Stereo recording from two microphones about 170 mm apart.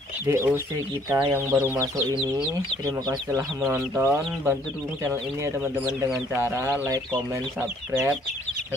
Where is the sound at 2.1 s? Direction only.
5° right (ahead or behind).